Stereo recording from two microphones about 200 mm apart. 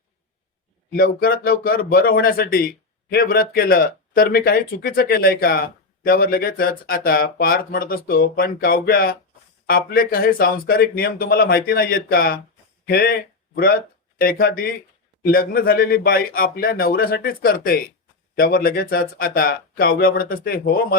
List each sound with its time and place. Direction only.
0.9 s speech: 45° left (ahead or behind)